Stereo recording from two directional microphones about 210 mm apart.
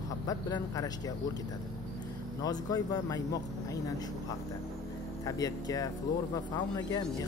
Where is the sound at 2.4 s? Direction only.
20° left (ahead or behind).